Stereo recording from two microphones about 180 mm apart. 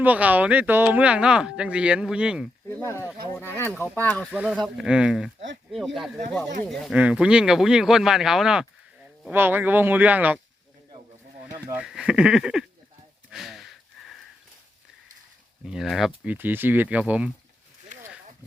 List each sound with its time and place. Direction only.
0.0 s speech: 10° right (ahead or behind)
2.6 s speech: 10° left (ahead or behind)
4.3 s speech: 5° right (ahead or behind)
11.5 s speech: 10° right (ahead or behind)
13.3 s a sound: centre (ahead or behind)
15.6 s speech: centre (ahead or behind)